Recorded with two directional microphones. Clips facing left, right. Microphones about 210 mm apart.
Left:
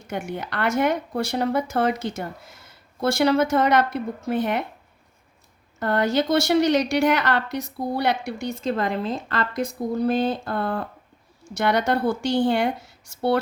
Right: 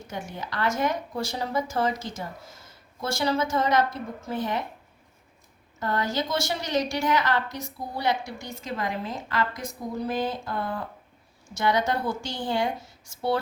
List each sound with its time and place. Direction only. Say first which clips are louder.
0.1 s speech: left 6 dB; 65° left (ahead or behind)
5.8 s a woman's voice: left 6 dB; 65° left (ahead or behind)